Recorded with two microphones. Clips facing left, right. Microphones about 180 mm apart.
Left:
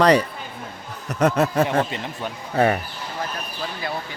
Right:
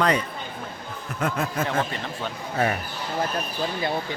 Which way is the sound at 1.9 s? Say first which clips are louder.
Left 1 dB; 15° left (ahead or behind).